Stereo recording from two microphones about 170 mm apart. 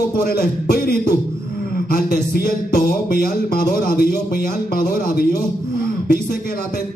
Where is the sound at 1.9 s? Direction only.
60° left (ahead or behind).